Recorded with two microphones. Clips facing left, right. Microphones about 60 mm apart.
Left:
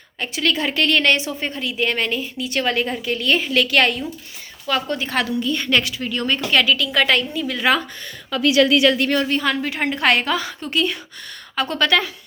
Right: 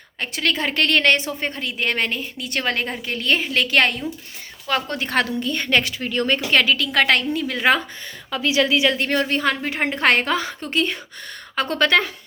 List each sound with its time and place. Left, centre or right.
0.2 s a woman's voice: right
8.3 s a woman's voice: right
9.0 s a woman's voice: right